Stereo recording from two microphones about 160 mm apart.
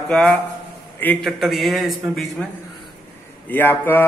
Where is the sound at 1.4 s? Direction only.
Centre (ahead or behind).